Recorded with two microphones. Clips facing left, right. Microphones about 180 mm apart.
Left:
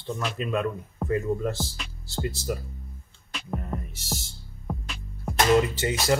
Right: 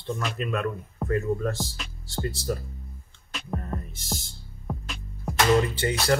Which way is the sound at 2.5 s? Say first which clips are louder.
Right 1 dB; 10° left (ahead or behind).